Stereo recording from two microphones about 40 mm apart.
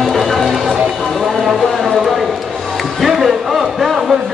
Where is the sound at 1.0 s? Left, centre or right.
Centre.